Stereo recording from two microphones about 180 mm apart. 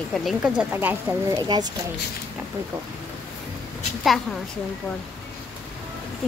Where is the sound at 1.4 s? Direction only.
20° right (ahead or behind).